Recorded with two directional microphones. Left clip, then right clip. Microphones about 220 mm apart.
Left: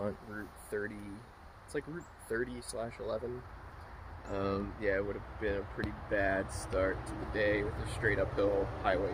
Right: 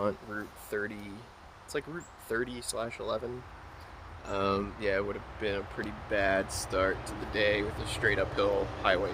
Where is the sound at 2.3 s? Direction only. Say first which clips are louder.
Right 3 dB; 5° right (ahead or behind).